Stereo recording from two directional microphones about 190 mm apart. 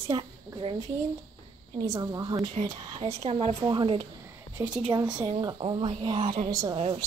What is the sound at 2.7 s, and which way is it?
Speech, 20° right (ahead or behind).